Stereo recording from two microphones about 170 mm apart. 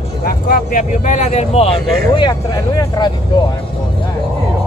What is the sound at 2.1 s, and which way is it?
Vehicle, 25° left (ahead or behind).